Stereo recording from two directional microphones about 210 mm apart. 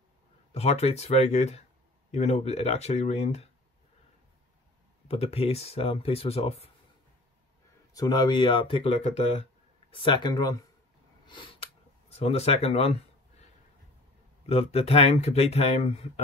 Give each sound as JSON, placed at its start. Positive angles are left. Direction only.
{"t": 0.5, "sound": "speech", "side_deg": 30}
{"t": 5.0, "sound": "speech", "side_deg": 25}
{"t": 7.9, "sound": "speech", "side_deg": 20}
{"t": 11.2, "sound": "a sound", "side_deg": 25}
{"t": 14.4, "sound": "speech", "side_deg": 30}